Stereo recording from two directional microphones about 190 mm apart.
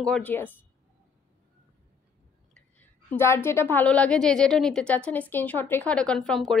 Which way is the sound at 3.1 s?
10° left (ahead or behind).